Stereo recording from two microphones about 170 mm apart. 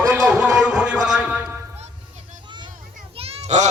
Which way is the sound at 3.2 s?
35° right (ahead or behind).